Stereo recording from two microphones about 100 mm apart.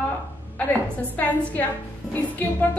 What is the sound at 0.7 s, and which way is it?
A woman's voice, 15° left (ahead or behind).